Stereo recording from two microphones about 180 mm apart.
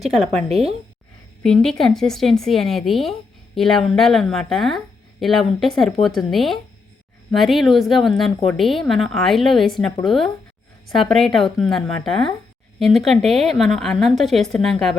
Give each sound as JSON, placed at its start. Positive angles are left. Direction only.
{"t": 0.0, "sound": "speech", "side_deg": 0}
{"t": 0.3, "sound": "speech", "side_deg": -35}
{"t": 1.5, "sound": "speech", "side_deg": 0}